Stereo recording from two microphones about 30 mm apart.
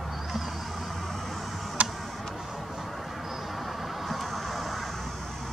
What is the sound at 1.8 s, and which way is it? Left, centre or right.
Tick, right.